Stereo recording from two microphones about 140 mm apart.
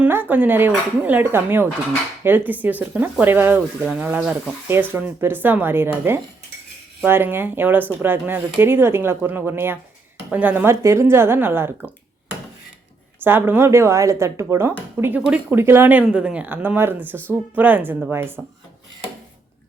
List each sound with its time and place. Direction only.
0.0 s speech: 15° right (ahead or behind)
13.1 s speech: 15° right (ahead or behind)